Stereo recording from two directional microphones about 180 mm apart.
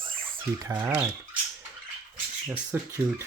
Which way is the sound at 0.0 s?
30° right (ahead or behind).